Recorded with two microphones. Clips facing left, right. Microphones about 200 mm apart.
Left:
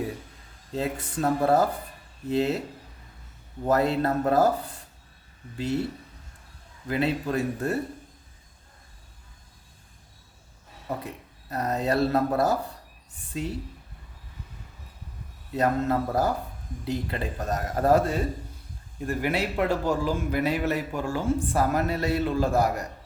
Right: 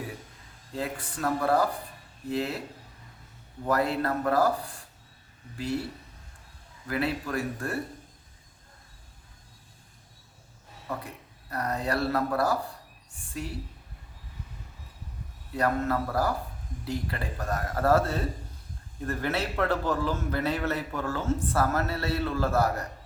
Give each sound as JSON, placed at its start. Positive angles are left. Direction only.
{"t": 0.7, "sound": "speech", "side_deg": 20}
{"t": 3.6, "sound": "speech", "side_deg": 25}
{"t": 6.8, "sound": "speech", "side_deg": 20}
{"t": 10.8, "sound": "speech", "side_deg": 20}
{"t": 15.5, "sound": "a man's voice", "side_deg": 20}